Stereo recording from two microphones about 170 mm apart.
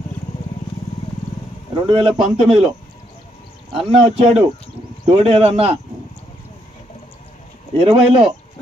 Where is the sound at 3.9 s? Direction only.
35° right (ahead or behind).